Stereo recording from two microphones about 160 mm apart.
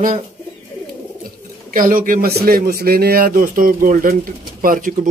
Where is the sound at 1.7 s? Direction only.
60° right (ahead or behind).